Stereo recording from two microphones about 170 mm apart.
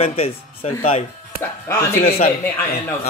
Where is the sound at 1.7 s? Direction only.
15° left (ahead or behind).